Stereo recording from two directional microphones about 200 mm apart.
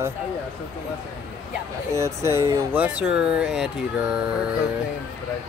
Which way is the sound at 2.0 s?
15° right (ahead or behind).